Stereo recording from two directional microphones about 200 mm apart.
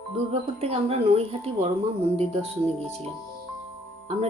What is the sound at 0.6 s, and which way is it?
Speech, 30° right (ahead or behind).